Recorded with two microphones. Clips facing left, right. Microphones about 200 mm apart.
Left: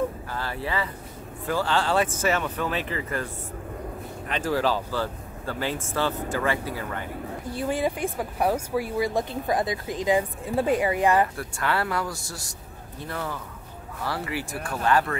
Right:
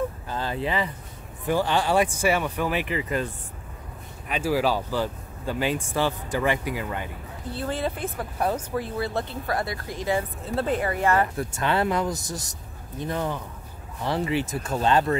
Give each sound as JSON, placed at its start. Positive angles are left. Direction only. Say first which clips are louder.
{"t": 0.3, "sound": "speech", "louder": "right 3 dB", "side_deg": -20}
{"t": 4.3, "sound": "speech", "louder": "right 1 dB", "side_deg": -10}
{"t": 7.5, "sound": "speech", "louder": "left 2 dB", "side_deg": 15}
{"t": 11.3, "sound": "speech", "louder": "right 3 dB", "side_deg": -20}